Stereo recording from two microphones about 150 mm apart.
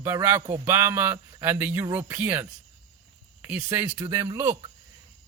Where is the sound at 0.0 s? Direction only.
15° right (ahead or behind).